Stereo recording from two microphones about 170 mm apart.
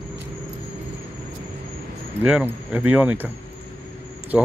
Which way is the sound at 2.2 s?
10° right (ahead or behind).